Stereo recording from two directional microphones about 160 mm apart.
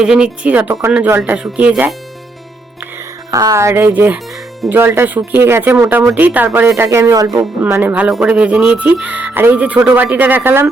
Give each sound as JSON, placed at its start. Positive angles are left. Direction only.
{"t": 0.0, "sound": "speech", "side_deg": -5}
{"t": 3.3, "sound": "speech", "side_deg": -20}
{"t": 7.6, "sound": "speech", "side_deg": -10}